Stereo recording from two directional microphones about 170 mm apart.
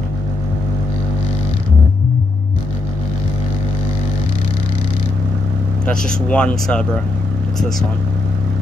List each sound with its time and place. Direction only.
5.9 s speech: 5° left (ahead or behind)